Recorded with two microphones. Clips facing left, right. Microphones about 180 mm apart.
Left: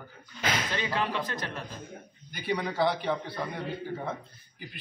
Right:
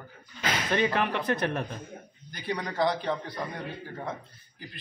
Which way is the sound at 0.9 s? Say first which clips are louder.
Right 3 dB; 65° right (ahead or behind).